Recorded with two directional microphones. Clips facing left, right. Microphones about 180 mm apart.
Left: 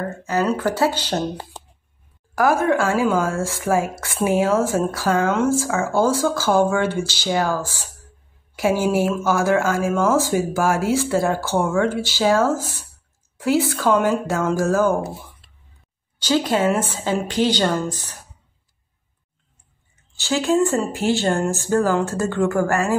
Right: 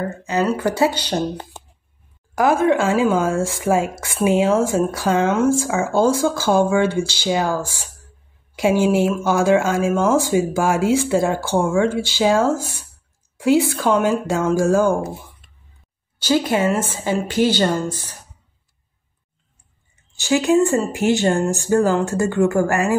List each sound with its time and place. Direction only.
0.2 s speech: 20° right (ahead or behind)
2.3 s speech: 15° right (ahead or behind)
16.2 s speech: 10° right (ahead or behind)
20.2 s speech: 15° right (ahead or behind)